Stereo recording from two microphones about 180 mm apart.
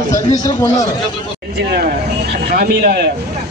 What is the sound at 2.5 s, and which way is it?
Speech, 60° right (ahead or behind).